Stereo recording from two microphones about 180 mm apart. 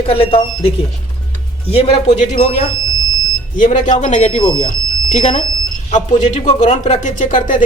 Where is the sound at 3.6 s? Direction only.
45° left (ahead or behind).